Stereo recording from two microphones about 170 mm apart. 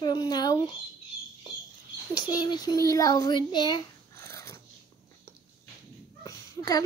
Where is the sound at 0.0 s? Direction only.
25° left (ahead or behind).